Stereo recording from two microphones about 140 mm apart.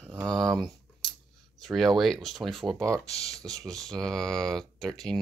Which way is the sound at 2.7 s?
20° right (ahead or behind).